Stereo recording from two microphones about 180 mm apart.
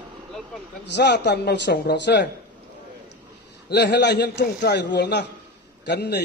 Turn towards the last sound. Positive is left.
turn(degrees=70)  # may be behind; listen again after turning